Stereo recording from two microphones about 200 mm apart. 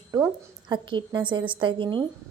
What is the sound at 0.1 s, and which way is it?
A woman's voice, 20° right (ahead or behind).